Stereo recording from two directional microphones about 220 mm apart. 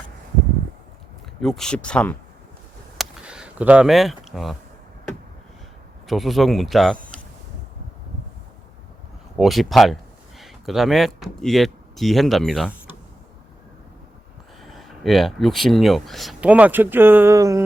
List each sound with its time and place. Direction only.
1.4 s speech: centre (ahead or behind)
3.0 s a sound: 5° right (ahead or behind)
6.1 s speech: centre (ahead or behind)
9.4 s speech: centre (ahead or behind)
14.6 s speech: centre (ahead or behind)